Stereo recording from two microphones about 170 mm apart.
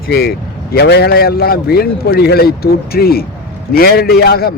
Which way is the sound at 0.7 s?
75° left (ahead or behind).